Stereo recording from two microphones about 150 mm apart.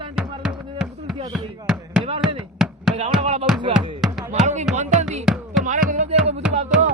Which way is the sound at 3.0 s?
45° right (ahead or behind).